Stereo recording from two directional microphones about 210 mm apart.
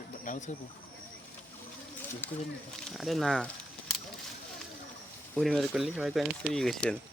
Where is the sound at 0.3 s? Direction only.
35° left (ahead or behind).